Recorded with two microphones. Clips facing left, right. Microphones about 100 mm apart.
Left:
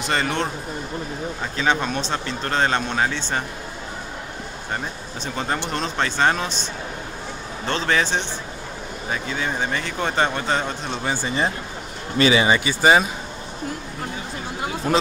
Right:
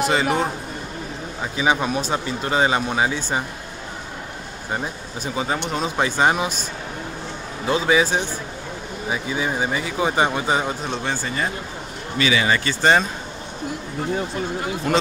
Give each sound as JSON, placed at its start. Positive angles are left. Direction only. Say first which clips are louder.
{"t": 0.0, "sound": "speech", "louder": "right 4 dB", "side_deg": -5}
{"t": 1.4, "sound": "speech", "louder": "right 2 dB", "side_deg": -10}
{"t": 4.7, "sound": "speech", "louder": "right 3 dB", "side_deg": -10}
{"t": 7.6, "sound": "speech", "louder": "right 4 dB", "side_deg": -10}
{"t": 11.1, "sound": "speech", "louder": "left 4 dB", "side_deg": 20}
{"t": 12.2, "sound": "speech", "louder": "left 3 dB", "side_deg": 30}
{"t": 12.4, "sound": "speech", "louder": "left 1 dB", "side_deg": 10}